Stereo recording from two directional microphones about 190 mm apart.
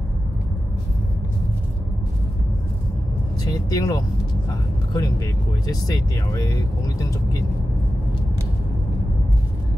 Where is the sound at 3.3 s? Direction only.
20° left (ahead or behind).